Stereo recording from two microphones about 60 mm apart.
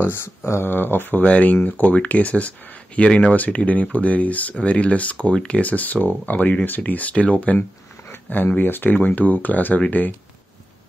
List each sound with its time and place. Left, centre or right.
0.0 s speech: left
1.2 s speech: left
5.1 s speech: centre
5.6 s speech: left